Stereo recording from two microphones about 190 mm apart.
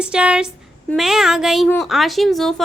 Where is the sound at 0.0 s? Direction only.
5° right (ahead or behind).